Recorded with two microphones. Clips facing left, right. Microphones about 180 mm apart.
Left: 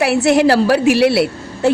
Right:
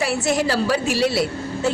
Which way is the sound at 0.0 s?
65° left (ahead or behind).